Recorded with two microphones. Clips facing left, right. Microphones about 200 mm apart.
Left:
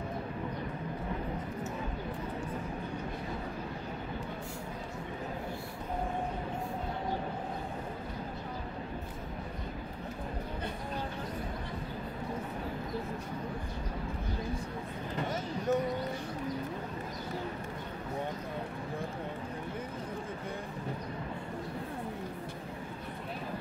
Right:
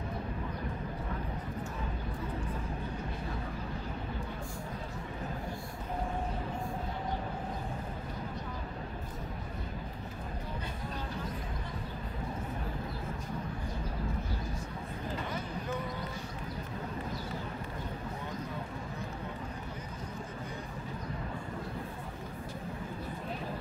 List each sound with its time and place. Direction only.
15.3 s vehicle: 45° left (ahead or behind)